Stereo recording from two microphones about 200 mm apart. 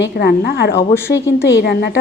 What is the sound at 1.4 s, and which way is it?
Speech, 60° left (ahead or behind).